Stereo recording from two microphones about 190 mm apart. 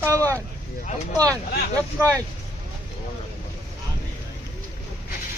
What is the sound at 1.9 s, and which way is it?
Speech, 15° right (ahead or behind).